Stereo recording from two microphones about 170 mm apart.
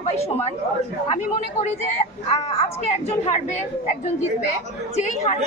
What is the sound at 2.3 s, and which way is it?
A woman's voice, 40° left (ahead or behind).